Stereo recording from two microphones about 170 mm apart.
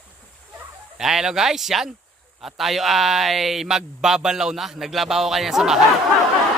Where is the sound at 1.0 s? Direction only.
5° right (ahead or behind).